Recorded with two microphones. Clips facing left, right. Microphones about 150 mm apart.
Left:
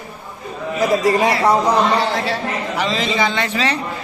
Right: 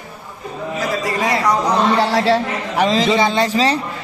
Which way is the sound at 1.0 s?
30° left (ahead or behind).